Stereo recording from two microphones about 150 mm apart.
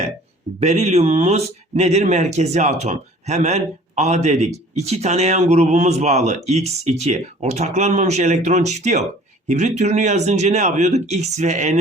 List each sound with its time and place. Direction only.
0.6 s speech: 45° right (ahead or behind)